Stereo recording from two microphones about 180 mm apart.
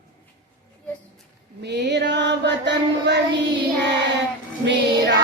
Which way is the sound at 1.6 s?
70° right (ahead or behind).